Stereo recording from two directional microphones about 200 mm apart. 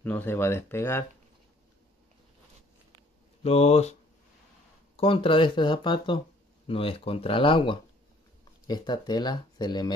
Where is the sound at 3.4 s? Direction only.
30° left (ahead or behind).